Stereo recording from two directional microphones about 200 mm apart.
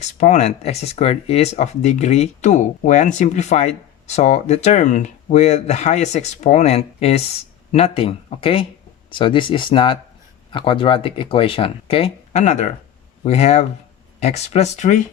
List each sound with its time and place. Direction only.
0.0 s speech: 35° left (ahead or behind)